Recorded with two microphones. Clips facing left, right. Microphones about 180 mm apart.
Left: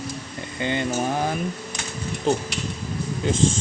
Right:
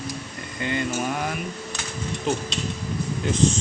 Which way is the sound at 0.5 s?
30° left (ahead or behind).